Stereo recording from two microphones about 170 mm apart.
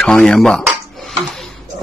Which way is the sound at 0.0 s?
5° left (ahead or behind).